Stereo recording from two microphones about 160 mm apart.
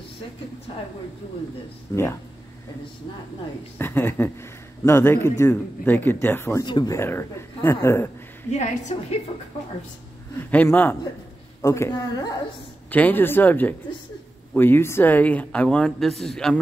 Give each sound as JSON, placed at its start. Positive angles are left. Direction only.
{"t": 1.9, "sound": "a woman's voice", "side_deg": 20}
{"t": 3.7, "sound": "speech", "side_deg": 10}
{"t": 6.6, "sound": "speech", "side_deg": 25}
{"t": 8.5, "sound": "a woman's voice", "side_deg": 45}
{"t": 10.5, "sound": "a woman's voice", "side_deg": 10}
{"t": 12.9, "sound": "speech", "side_deg": 10}